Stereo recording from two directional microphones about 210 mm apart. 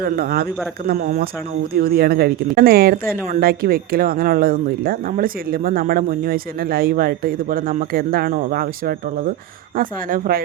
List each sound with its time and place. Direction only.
0.0 s speech: 45° right (ahead or behind)